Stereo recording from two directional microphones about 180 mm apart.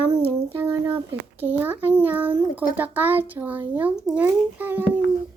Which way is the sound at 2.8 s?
10° right (ahead or behind).